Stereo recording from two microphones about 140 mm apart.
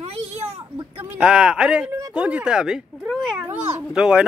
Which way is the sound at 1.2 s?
5° right (ahead or behind).